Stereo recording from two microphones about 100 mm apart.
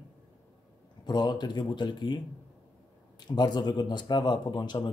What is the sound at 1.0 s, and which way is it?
Speech, 45° left (ahead or behind).